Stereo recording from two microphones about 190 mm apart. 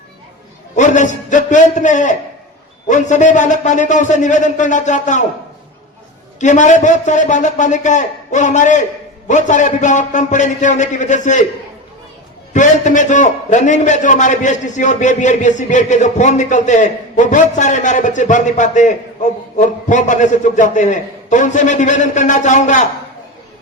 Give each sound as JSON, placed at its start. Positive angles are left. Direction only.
{"t": 0.8, "sound": "a man's voice", "side_deg": 40}
{"t": 6.4, "sound": "a man's voice", "side_deg": 40}
{"t": 12.5, "sound": "a man's voice", "side_deg": 40}